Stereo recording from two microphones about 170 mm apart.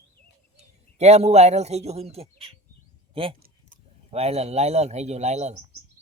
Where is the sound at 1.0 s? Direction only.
40° right (ahead or behind).